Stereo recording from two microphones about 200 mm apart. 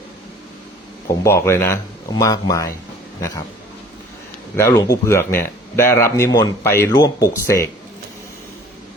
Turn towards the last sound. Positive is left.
turn(degrees=15)  # may be behind; listen again after turning